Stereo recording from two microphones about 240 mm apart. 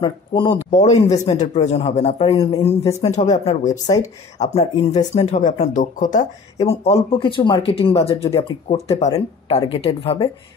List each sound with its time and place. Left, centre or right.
0.0 s a man's voice: left